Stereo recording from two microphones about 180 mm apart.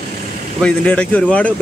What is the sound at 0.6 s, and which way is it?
Speech, 5° left (ahead or behind).